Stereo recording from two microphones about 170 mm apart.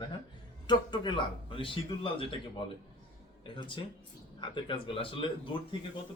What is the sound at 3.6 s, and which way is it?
A man's voice, 30° left (ahead or behind).